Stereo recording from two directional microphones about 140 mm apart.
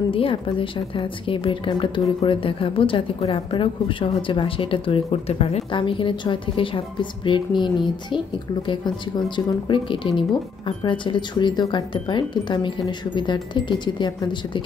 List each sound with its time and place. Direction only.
0.1 s speech: 40° left (ahead or behind)